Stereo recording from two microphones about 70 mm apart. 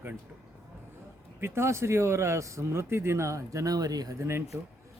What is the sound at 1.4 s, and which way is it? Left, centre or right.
Speech, right.